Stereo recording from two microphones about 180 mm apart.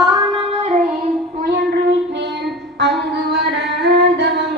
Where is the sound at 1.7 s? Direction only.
65° right (ahead or behind).